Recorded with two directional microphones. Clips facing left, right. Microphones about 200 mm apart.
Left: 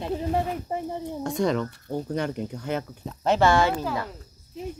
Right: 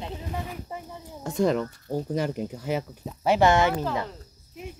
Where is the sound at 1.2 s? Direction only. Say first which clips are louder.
Right 2 dB; 5° right (ahead or behind); by 3.7 s 20° right (ahead or behind).